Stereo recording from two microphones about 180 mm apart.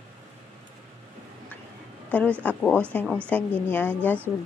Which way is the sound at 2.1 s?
10° left (ahead or behind).